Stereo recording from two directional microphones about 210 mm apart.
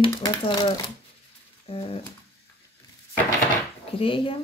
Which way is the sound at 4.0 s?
25° left (ahead or behind).